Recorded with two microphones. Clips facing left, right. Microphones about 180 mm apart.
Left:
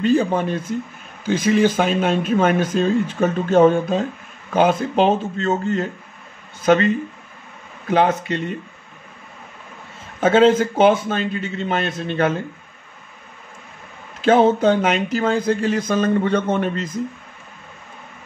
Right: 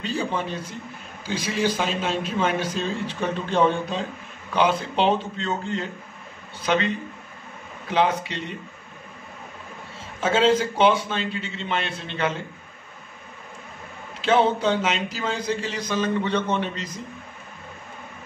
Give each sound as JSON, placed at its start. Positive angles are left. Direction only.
{"t": 0.0, "sound": "speech", "side_deg": 50}
{"t": 7.9, "sound": "speech", "side_deg": 50}
{"t": 10.2, "sound": "speech", "side_deg": 50}
{"t": 14.2, "sound": "speech", "side_deg": 50}